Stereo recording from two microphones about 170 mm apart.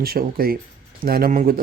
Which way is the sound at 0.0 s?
60° right (ahead or behind).